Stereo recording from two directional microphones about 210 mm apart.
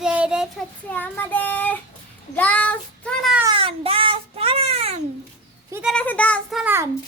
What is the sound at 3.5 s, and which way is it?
Baby cry, 25° right (ahead or behind).